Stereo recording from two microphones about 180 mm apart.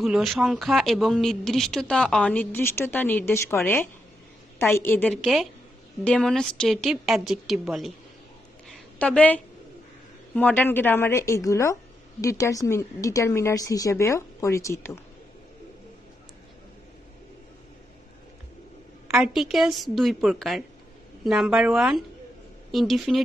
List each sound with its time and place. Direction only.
0.0 s a woman's voice: centre (ahead or behind)
8.6 s a sound: 5° left (ahead or behind)
10.3 s a woman's voice: 10° left (ahead or behind)
19.0 s speech: 5° right (ahead or behind)